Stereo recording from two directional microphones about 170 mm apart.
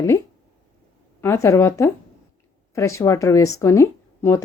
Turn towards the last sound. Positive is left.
turn(degrees=15)  # may be behind; listen again after turning